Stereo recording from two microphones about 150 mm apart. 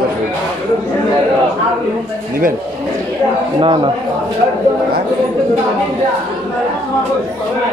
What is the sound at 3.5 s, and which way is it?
Speech, 30° right (ahead or behind).